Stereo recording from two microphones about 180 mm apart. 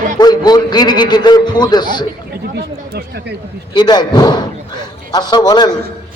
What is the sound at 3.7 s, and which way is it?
A man's voice, 25° left (ahead or behind).